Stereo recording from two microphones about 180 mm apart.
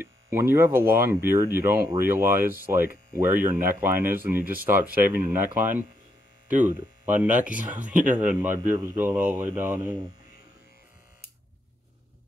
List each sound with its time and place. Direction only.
0.0 s speech: 15° right (ahead or behind)
7.1 s speech: 10° right (ahead or behind)
7.8 s speech: 45° right (ahead or behind)
8.2 s speech: 5° right (ahead or behind)